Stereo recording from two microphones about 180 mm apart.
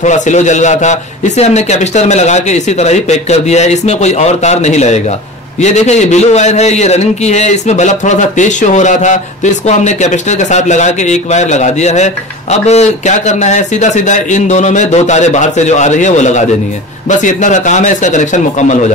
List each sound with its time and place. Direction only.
0.0 s a man's voice: 40° left (ahead or behind)